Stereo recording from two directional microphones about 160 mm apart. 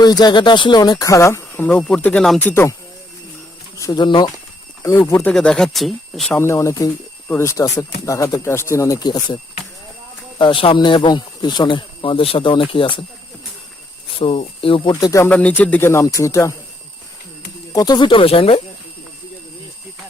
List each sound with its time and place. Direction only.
0.0 s speech: 25° left (ahead or behind)
3.8 s speech: 25° left (ahead or behind)
4.8 s speech: 20° left (ahead or behind); by 6.3 s centre (ahead or behind)
6.3 s speech: 15° left (ahead or behind); by 13.0 s 30° left (ahead or behind)
14.2 s speech: 35° left (ahead or behind)
15.3 s speech: 10° left (ahead or behind)
17.7 s speech: 25° left (ahead or behind)